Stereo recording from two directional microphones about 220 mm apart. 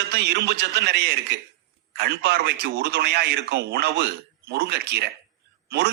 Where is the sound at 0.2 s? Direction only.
50° right (ahead or behind).